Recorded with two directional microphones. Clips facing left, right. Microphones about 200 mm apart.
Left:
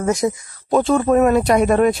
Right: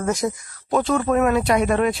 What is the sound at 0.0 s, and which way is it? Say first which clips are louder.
Speech: left 4 dB; 20° left (ahead or behind).